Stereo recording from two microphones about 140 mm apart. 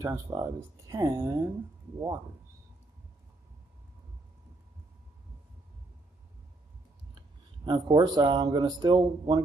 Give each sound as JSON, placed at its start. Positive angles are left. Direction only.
{"t": 0.0, "sound": "speech", "side_deg": -20}
{"t": 7.2, "sound": "speech", "side_deg": -30}